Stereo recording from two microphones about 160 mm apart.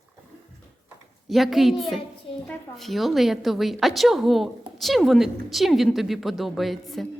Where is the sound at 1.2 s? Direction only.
Centre (ahead or behind).